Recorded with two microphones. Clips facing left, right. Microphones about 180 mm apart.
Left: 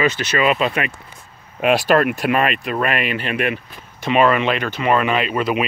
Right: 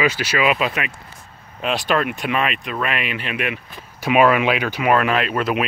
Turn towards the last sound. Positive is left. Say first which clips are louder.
# left 1 dB
turn(degrees=0)  # may be behind; listen again after turning